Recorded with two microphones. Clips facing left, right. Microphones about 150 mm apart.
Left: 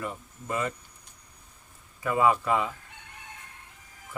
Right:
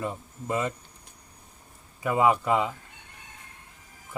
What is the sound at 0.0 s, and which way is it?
Speech, 25° right (ahead or behind).